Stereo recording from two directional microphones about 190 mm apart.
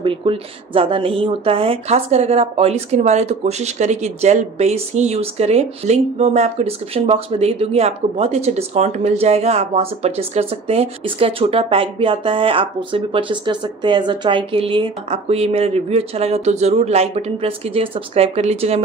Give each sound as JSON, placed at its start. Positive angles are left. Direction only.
{"t": 0.0, "sound": "speech", "side_deg": -25}